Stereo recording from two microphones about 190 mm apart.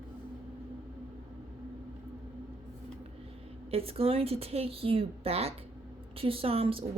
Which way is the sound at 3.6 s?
30° right (ahead or behind).